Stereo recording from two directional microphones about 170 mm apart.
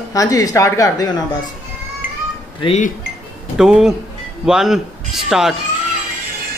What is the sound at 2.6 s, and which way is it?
Wind chime, 35° left (ahead or behind).